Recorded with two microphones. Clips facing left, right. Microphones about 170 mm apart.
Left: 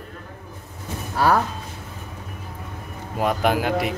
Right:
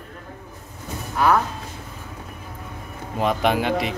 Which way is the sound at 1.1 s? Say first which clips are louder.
Even; 35° left (ahead or behind).